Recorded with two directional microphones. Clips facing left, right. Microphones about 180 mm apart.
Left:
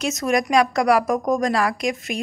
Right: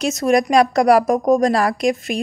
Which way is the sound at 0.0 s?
35° right (ahead or behind).